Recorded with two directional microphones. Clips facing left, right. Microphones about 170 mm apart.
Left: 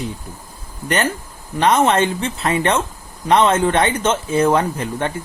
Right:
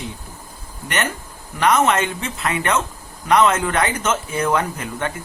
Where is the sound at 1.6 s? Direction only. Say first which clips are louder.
Left 2 dB; 30° left (ahead or behind).